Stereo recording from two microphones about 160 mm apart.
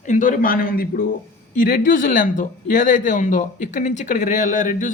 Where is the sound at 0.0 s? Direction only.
50° left (ahead or behind).